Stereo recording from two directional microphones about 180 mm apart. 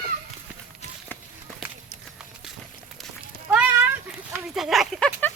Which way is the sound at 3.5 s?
10° right (ahead or behind).